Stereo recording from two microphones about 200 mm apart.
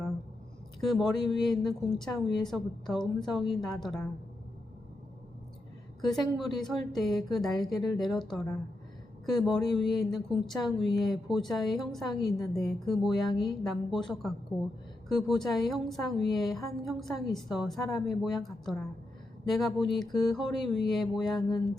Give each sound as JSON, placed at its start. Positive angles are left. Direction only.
{"t": 0.8, "sound": "a woman's voice", "side_deg": 0}
{"t": 6.0, "sound": "a woman's voice", "side_deg": 0}